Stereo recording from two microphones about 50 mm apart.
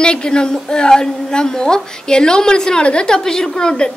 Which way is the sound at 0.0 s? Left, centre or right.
Centre.